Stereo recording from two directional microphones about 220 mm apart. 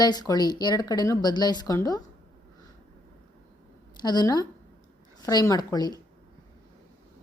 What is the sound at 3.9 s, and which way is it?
A woman's voice, 20° left (ahead or behind).